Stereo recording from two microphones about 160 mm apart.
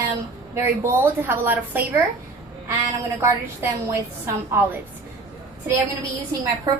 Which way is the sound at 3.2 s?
15° right (ahead or behind).